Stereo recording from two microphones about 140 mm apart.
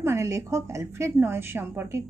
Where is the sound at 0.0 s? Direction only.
20° right (ahead or behind).